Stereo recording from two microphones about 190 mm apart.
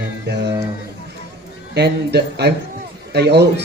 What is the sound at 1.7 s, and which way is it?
A man's voice, 60° right (ahead or behind).